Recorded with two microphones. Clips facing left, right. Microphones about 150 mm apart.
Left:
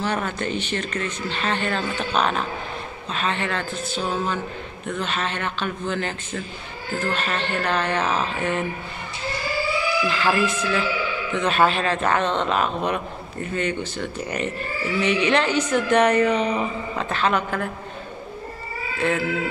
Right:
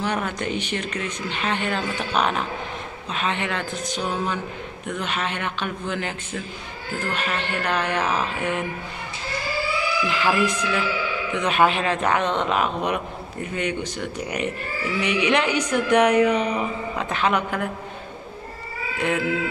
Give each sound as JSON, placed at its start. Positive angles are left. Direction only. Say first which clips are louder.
{"t": 0.0, "sound": "a man's voice", "louder": "even", "side_deg": -15}
{"t": 10.0, "sound": "a man's voice", "louder": "right 1 dB", "side_deg": -15}
{"t": 18.9, "sound": "a man's voice", "louder": "left 1 dB", "side_deg": -15}